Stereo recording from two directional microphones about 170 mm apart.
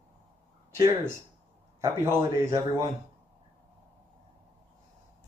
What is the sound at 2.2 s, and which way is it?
Speech, 20° right (ahead or behind).